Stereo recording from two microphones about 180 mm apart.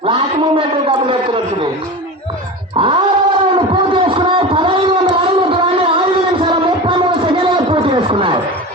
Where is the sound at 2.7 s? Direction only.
30° right (ahead or behind).